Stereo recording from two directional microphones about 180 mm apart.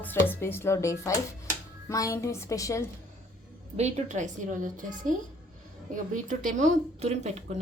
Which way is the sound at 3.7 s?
40° right (ahead or behind).